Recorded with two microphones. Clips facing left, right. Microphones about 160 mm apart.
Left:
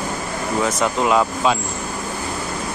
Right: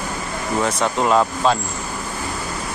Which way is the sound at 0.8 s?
Centre (ahead or behind).